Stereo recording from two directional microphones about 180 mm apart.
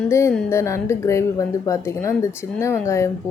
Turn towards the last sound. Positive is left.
turn(degrees=15)  # may be behind; listen again after turning